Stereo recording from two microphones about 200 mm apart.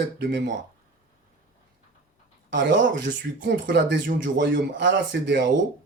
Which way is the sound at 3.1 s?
40° right (ahead or behind).